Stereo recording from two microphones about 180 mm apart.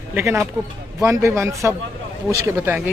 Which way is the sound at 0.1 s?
10° right (ahead or behind).